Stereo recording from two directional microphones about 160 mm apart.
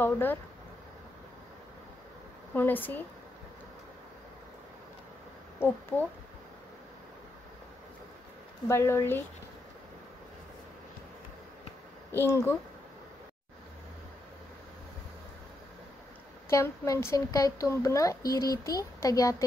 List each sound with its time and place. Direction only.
0.0 s speech: 10° left (ahead or behind)
2.5 s speech: 10° left (ahead or behind)
5.6 s speech: 15° left (ahead or behind)
8.6 s speech: 15° left (ahead or behind)
12.1 s speech: 15° left (ahead or behind)
16.4 s speech: 20° left (ahead or behind)